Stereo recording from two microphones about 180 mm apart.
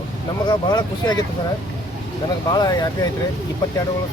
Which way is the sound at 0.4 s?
25° left (ahead or behind).